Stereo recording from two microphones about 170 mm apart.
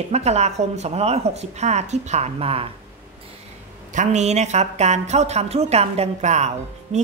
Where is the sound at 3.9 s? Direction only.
40° right (ahead or behind).